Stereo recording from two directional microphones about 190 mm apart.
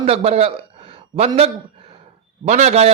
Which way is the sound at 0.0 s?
35° right (ahead or behind).